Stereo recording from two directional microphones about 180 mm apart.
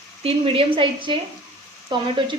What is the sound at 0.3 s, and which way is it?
Speech, 30° right (ahead or behind).